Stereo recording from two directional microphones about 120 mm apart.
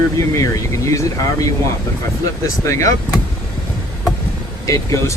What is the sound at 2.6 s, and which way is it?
Speech, 25° left (ahead or behind).